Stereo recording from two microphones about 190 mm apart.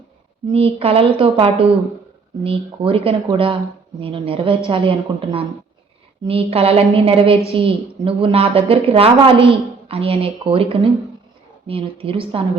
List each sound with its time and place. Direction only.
0.5 s a woman's voice: 30° right (ahead or behind)